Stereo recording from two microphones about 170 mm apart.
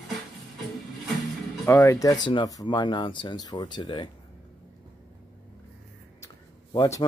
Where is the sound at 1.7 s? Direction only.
15° left (ahead or behind).